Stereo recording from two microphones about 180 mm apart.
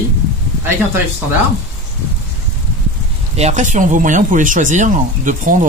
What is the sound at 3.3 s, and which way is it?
Speech, 40° right (ahead or behind).